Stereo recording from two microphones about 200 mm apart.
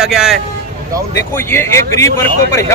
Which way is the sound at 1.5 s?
15° left (ahead or behind).